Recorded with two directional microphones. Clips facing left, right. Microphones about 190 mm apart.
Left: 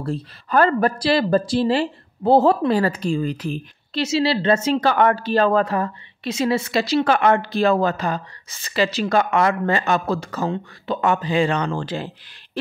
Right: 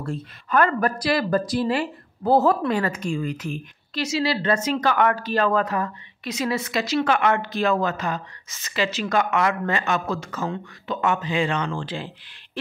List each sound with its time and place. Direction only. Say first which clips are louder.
0.0 s speech: left 4 dB; 35° left (ahead or behind)